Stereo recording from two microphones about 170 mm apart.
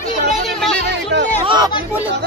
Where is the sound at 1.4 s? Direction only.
25° right (ahead or behind).